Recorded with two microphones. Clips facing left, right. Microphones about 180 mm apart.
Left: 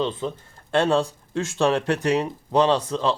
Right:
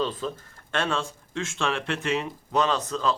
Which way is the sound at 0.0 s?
25° left (ahead or behind).